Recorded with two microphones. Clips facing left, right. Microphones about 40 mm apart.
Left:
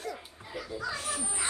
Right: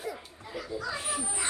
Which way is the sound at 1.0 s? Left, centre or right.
Centre.